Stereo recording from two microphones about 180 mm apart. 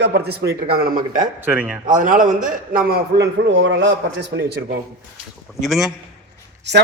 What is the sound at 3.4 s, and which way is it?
Speech, 85° right.